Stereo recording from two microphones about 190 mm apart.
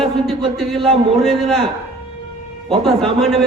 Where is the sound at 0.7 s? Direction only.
25° right (ahead or behind).